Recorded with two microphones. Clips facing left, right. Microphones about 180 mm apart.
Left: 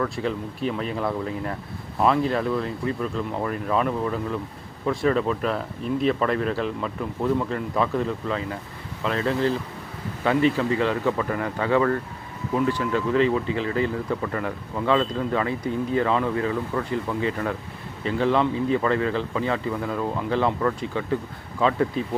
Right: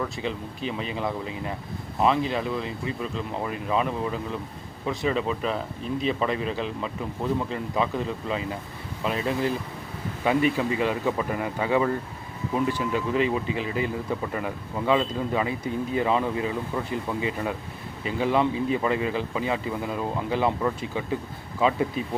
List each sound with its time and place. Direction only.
0.2 s speech: centre (ahead or behind)
3.7 s speech: 5° right (ahead or behind)
9.0 s a man's voice: 15° right (ahead or behind)